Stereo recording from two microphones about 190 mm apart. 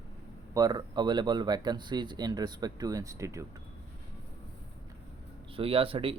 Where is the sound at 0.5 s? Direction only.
20° right (ahead or behind).